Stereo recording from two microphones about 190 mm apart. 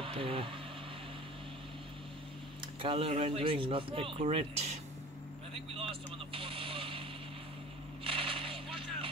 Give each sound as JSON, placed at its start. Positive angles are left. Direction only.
{"t": 0.0, "sound": "speech", "side_deg": -30}
{"t": 2.8, "sound": "speech", "side_deg": -30}
{"t": 5.8, "sound": "vehicle", "side_deg": -30}
{"t": 8.0, "sound": "a sound", "side_deg": -30}